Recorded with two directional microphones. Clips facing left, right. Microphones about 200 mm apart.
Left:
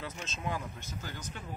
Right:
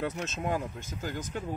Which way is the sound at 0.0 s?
60° right (ahead or behind).